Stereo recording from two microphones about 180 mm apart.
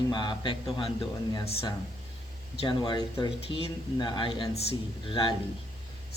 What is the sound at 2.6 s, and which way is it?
Speech, 25° left (ahead or behind).